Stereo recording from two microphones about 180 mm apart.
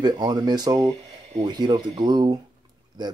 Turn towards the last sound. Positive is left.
turn(degrees=-25)  # may be behind; listen again after turning